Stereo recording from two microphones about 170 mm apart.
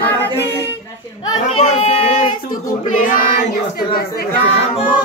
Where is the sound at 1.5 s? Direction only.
35° left (ahead or behind).